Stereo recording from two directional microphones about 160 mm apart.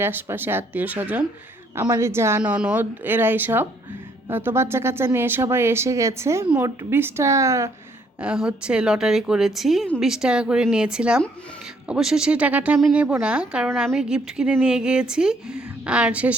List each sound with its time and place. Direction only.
0.0 s speech: 15° right (ahead or behind)
8.2 s speech: 5° right (ahead or behind)